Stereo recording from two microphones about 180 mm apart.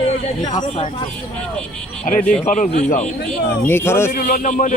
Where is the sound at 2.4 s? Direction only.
45° left (ahead or behind).